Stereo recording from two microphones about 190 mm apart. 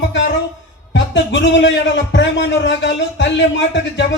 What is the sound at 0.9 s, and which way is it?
A man's voice, 70° left (ahead or behind).